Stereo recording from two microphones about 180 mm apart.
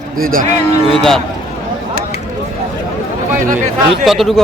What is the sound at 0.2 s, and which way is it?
Speech, 50° right (ahead or behind).